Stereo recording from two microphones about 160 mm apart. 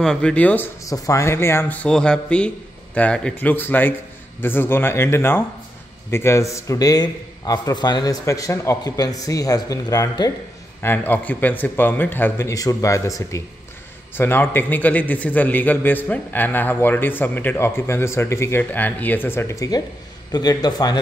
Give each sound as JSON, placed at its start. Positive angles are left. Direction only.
{"t": 0.0, "sound": "a man's voice", "side_deg": 5}
{"t": 0.8, "sound": "a man's voice", "side_deg": 20}
{"t": 10.8, "sound": "a man's voice", "side_deg": 10}